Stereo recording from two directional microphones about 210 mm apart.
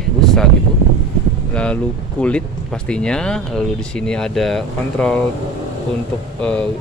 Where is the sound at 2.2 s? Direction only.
5° left (ahead or behind).